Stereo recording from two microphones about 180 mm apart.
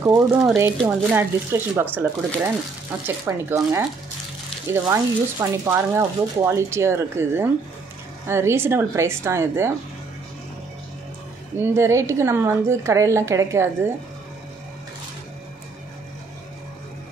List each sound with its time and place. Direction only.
0.0 s speech: 15° right (ahead or behind)
4.8 s speech: 15° right (ahead or behind)
11.5 s speech: 15° right (ahead or behind)